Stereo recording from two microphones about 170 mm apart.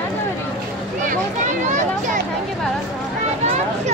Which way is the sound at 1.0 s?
45° right (ahead or behind).